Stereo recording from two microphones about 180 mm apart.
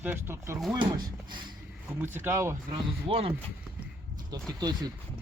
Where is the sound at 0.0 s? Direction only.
10° right (ahead or behind).